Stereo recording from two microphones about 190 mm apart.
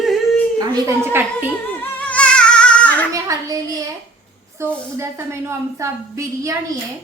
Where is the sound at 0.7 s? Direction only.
15° right (ahead or behind).